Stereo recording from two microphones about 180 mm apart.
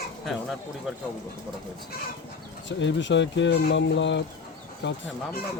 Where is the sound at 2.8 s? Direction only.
90° left.